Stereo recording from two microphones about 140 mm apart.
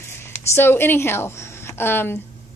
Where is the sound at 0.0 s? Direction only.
15° left (ahead or behind).